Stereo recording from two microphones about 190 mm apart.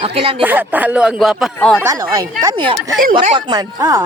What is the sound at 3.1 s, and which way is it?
Speech, 40° right (ahead or behind).